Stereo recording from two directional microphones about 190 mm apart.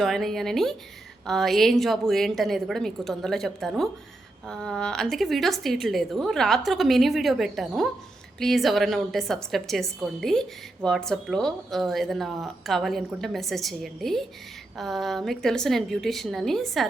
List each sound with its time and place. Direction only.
0.0 s a woman's voice: centre (ahead or behind)